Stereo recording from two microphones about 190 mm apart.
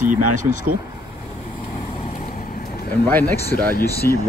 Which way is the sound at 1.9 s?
40° left (ahead or behind).